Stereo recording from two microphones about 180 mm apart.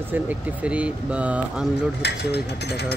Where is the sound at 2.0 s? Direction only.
70° left (ahead or behind).